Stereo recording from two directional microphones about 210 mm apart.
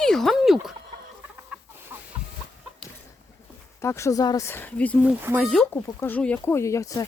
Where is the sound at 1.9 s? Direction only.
10° right (ahead or behind).